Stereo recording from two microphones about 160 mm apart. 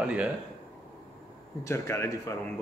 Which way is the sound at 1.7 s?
20° left (ahead or behind).